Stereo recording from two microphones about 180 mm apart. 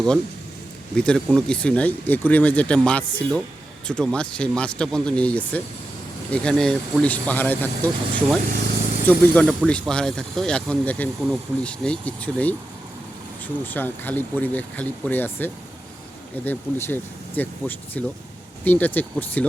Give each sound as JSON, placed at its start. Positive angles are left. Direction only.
{"t": 0.9, "sound": "speech", "side_deg": 5}
{"t": 13.7, "sound": "speech", "side_deg": 10}